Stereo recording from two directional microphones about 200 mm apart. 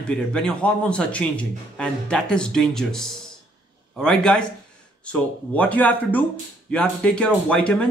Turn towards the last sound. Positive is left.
turn(degrees=5)  # may be behind; listen again after turning